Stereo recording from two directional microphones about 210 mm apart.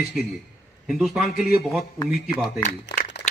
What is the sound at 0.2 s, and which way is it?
A man's voice, centre (ahead or behind).